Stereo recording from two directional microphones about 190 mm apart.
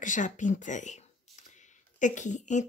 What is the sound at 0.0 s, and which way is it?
Speech, 40° left (ahead or behind).